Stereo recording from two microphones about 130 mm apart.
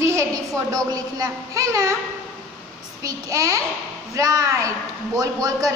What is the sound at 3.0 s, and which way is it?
A woman's voice, 25° right (ahead or behind).